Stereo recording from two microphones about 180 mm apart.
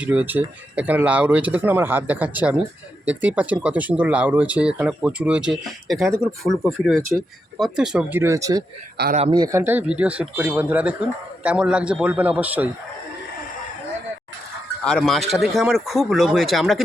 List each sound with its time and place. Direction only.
0.0 s speech: 10° right (ahead or behind)
14.8 s speech: 5° left (ahead or behind)